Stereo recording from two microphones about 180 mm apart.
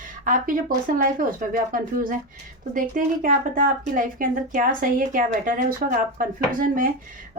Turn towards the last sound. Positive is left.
turn(degrees=-50)  # may be behind; listen again after turning